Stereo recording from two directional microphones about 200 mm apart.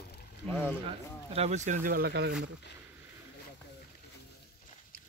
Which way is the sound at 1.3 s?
35° right (ahead or behind).